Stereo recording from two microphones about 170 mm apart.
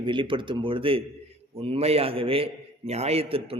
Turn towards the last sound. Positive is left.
turn(degrees=-35)  # may be behind; listen again after turning